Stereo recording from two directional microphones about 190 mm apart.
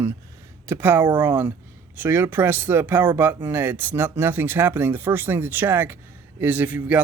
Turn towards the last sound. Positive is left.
turn(degrees=-10)  # may be behind; listen again after turning